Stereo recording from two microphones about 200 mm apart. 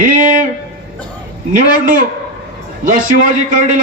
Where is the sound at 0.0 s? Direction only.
40° right (ahead or behind).